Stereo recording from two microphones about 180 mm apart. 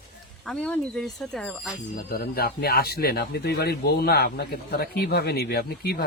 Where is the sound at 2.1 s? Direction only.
55° left (ahead or behind).